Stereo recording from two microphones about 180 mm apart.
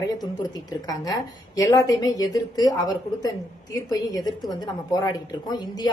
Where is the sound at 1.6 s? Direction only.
20° left (ahead or behind).